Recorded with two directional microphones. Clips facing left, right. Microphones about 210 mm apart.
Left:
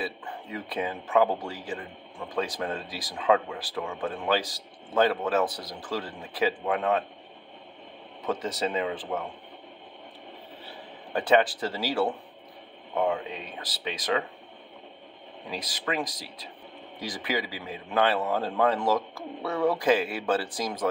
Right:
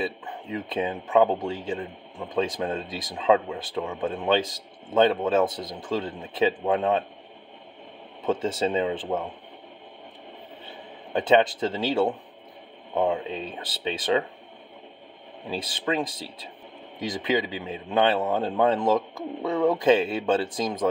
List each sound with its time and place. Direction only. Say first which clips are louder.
0.0 s speech: right 4 dB; 20° right (ahead or behind)
8.3 s speech: right 4 dB; 25° right (ahead or behind)
10.6 s a man's voice: right 1 dB; 25° right (ahead or behind)
15.5 s speech: right 4 dB; 30° right (ahead or behind)